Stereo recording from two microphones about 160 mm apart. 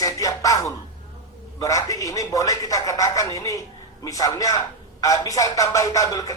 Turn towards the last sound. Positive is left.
turn(degrees=20)  # may be behind; listen again after turning